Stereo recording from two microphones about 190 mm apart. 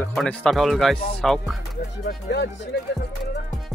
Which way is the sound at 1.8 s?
60° left (ahead or behind).